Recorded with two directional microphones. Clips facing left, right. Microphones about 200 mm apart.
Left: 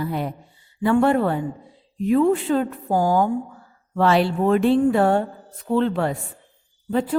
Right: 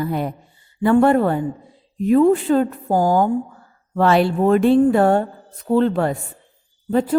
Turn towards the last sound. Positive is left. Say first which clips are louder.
# right 4 dB
turn(degrees=-40)  # may be behind; listen again after turning